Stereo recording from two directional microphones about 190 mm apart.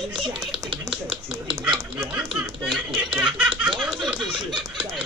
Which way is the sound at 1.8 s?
20° right (ahead or behind).